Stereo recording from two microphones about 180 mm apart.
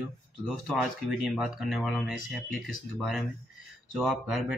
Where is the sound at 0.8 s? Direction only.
5° right (ahead or behind).